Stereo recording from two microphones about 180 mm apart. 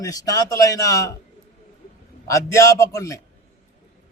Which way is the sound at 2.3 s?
15° left (ahead or behind).